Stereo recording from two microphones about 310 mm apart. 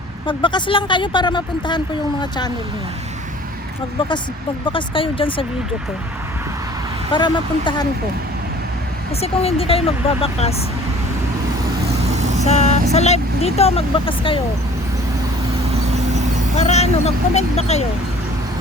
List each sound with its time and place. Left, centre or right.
0.3 s speech: centre
4.6 s speech: centre
7.1 s speech: centre
9.2 s speech: centre
11.9 s vehicle: right
12.5 s speech: left
15.6 s vehicle: right
16.6 s speech: left